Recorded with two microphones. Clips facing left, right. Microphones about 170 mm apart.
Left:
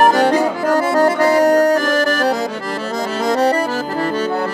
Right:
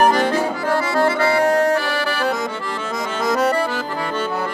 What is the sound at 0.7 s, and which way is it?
Accordion, 45° left (ahead or behind).